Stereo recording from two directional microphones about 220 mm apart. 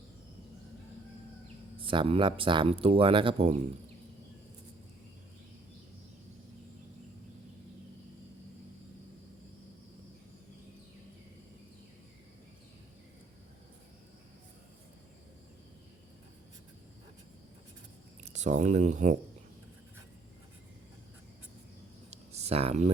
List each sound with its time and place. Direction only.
1.7 s speech: 25° right (ahead or behind)
18.3 s speech: 30° right (ahead or behind)
22.3 s a sound: 30° right (ahead or behind)